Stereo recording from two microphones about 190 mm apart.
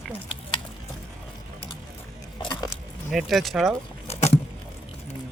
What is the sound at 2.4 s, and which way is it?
Biting, 20° left (ahead or behind).